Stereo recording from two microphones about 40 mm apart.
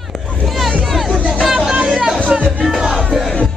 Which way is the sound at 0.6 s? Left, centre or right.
Centre.